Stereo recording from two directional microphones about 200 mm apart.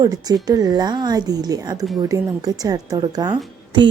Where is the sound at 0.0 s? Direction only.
20° right (ahead or behind).